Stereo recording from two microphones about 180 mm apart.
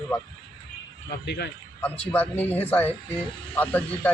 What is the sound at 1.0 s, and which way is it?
Speech, 70° left (ahead or behind).